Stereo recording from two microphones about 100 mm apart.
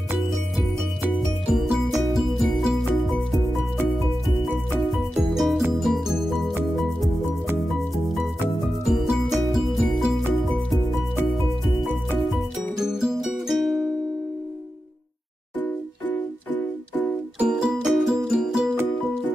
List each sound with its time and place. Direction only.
1.5 s music: centre (ahead or behind)
4.8 s music: centre (ahead or behind)
12.3 s music: centre (ahead or behind)
15.6 s music: 15° left (ahead or behind)
17.4 s music: 10° right (ahead or behind)